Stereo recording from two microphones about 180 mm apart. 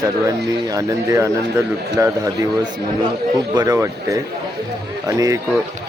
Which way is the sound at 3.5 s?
20° right (ahead or behind).